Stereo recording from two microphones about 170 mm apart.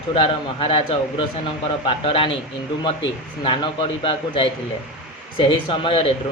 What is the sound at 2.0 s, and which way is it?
Speech, 35° left (ahead or behind).